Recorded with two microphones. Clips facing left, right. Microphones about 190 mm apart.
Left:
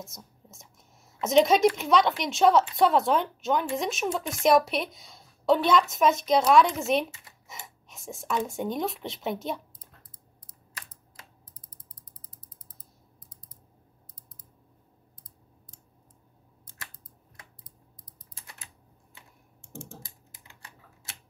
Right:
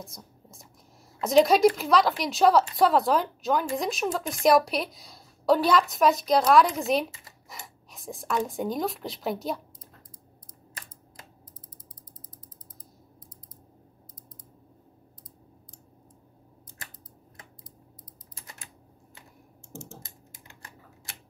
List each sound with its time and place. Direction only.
0.0 s a woman's voice: centre (ahead or behind)